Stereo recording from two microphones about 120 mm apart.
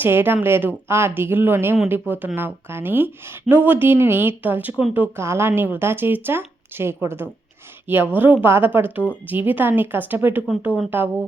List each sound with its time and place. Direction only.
0.0 s speech: 15° right (ahead or behind)